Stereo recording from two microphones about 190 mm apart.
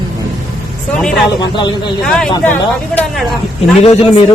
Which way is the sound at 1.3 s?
20° left (ahead or behind).